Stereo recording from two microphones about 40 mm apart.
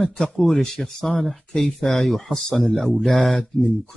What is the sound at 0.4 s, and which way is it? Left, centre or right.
Speech, centre.